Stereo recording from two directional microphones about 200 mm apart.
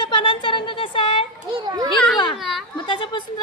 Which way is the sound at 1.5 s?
20° right (ahead or behind).